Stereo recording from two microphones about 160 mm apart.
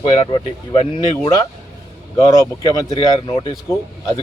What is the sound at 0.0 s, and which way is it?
Speech, 30° left (ahead or behind).